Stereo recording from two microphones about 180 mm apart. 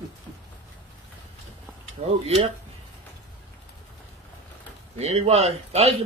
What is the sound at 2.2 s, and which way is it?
Speech, 35° right (ahead or behind).